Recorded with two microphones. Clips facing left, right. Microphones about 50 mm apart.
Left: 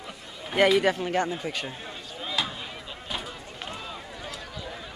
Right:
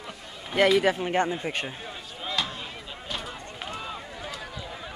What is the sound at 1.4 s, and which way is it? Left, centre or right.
Speech, right.